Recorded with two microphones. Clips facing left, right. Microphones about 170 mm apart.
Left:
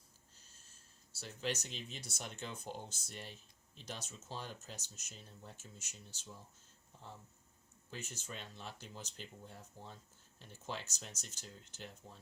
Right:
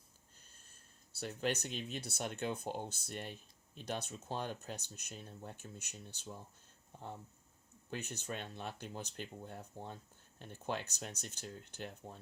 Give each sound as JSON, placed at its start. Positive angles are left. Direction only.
{"t": 1.1, "sound": "speech", "side_deg": -55}
{"t": 7.9, "sound": "speech", "side_deg": -60}